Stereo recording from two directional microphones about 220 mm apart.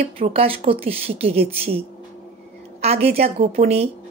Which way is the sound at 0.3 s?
25° right (ahead or behind).